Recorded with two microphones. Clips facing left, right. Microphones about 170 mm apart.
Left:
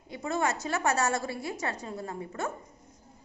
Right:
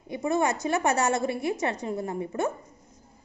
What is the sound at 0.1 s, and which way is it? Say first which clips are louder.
A woman's voice: right 5 dB; 15° right (ahead or behind).